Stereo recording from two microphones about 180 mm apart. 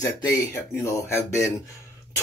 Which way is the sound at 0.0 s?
20° left (ahead or behind).